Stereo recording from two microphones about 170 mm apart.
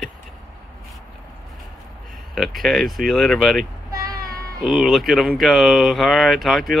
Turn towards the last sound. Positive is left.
turn(degrees=0)  # may be behind; listen again after turning